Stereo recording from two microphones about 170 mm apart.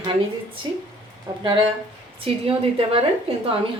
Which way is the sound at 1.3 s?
25° right (ahead or behind).